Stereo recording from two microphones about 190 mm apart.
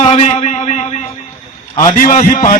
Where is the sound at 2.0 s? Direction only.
40° left (ahead or behind).